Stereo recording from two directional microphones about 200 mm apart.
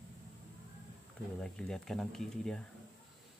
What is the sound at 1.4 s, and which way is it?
Speech, 5° left (ahead or behind).